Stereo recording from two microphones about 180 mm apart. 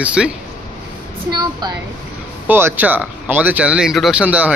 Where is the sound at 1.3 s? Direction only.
25° right (ahead or behind).